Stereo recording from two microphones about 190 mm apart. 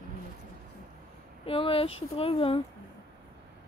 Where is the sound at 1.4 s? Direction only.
30° left (ahead or behind).